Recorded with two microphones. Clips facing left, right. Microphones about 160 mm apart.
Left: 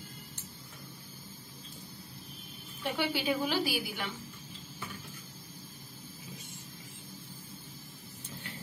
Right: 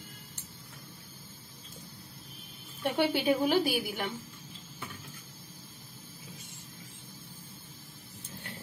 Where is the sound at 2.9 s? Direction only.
50° right (ahead or behind).